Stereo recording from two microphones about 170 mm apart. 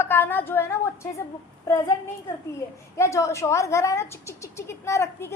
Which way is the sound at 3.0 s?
15° left (ahead or behind).